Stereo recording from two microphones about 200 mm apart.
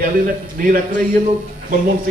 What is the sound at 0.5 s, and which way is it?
Speech, 45° right (ahead or behind).